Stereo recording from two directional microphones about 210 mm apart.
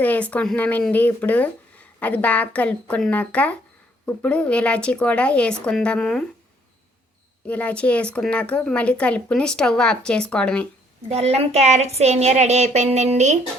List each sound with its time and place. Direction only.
0.0 s speech: 5° left (ahead or behind)
7.4 s speech: 5° left (ahead or behind)
11.1 s a woman's voice: 30° right (ahead or behind)